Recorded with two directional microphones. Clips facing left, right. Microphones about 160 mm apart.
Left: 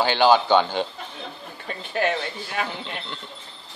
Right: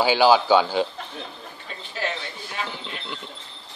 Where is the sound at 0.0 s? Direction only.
10° right (ahead or behind).